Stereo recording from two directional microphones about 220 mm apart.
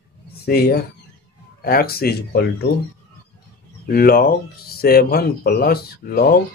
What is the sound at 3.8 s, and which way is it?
Speech, 45° left (ahead or behind).